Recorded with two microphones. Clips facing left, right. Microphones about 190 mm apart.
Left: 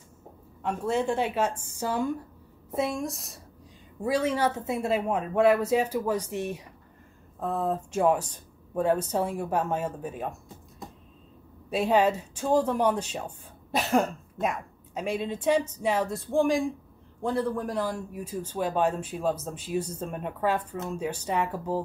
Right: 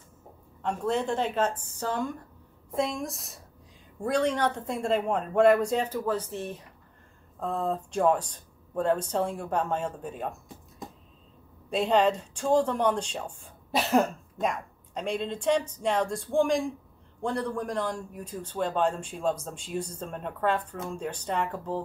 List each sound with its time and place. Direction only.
0.6 s a man's voice: 10° left (ahead or behind)
11.7 s a man's voice: 5° left (ahead or behind)